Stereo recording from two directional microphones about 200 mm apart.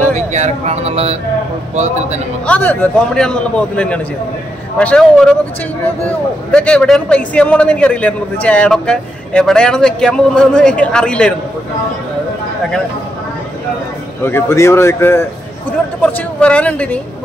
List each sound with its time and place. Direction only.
0.1 s a man's voice: 35° right (ahead or behind)
2.4 s speech: 5° left (ahead or behind)
14.2 s speech: 10° left (ahead or behind)